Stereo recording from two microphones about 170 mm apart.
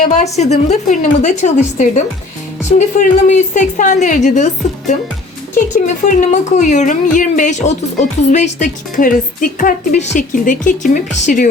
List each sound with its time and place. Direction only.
0.0 s a woman's voice: 45° left (ahead or behind)
5.8 s a woman's voice: 45° left (ahead or behind)